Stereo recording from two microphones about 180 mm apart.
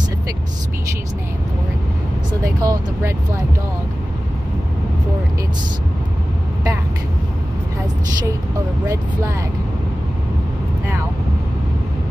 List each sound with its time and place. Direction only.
2.4 s speech: 20° right (ahead or behind)
8.8 s speech: 15° right (ahead or behind)